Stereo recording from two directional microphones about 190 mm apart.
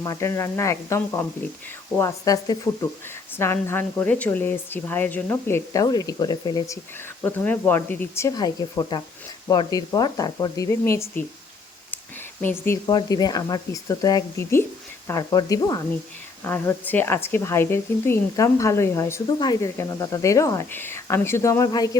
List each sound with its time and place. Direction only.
0.0 s speech: 15° left (ahead or behind)
7.2 s speech: 10° left (ahead or behind)
12.4 s speech: 10° left (ahead or behind)